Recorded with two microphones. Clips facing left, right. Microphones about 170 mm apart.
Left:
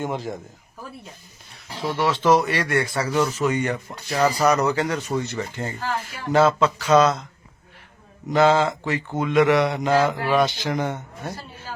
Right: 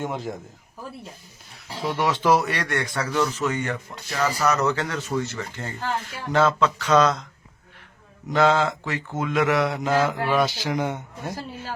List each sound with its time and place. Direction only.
0.0 s speech: centre (ahead or behind)
1.7 s speech: 10° right (ahead or behind); by 7.2 s 10° left (ahead or behind)
8.3 s speech: centre (ahead or behind)